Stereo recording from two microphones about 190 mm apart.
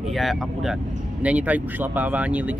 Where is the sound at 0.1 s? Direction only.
Centre (ahead or behind).